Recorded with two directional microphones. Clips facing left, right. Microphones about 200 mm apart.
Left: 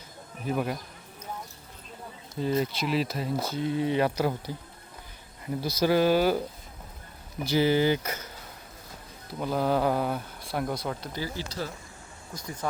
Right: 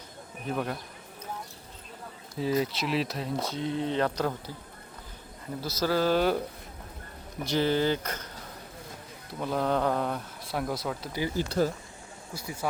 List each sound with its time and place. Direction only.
0.4 s speech: 5° left (ahead or behind)
2.3 s speech: centre (ahead or behind)
5.6 s speech: 15° left (ahead or behind)
7.4 s speech: 5° left (ahead or behind)
9.4 s speech: centre (ahead or behind)
11.3 s speech: 50° right (ahead or behind)
12.3 s speech: 10° right (ahead or behind)